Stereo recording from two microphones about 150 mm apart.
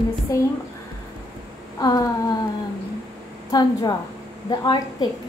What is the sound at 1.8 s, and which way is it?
Speech, 25° left (ahead or behind).